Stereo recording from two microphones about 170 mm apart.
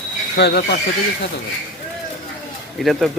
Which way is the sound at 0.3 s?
75° left (ahead or behind).